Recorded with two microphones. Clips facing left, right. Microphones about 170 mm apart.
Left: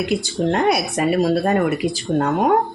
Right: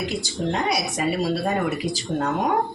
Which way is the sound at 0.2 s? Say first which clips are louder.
Left 6 dB; 55° left (ahead or behind).